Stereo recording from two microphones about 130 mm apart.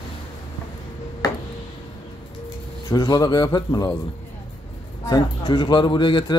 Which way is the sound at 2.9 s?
30° left (ahead or behind).